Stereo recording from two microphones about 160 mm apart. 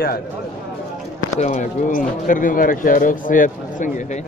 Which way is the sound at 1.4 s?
50° left (ahead or behind).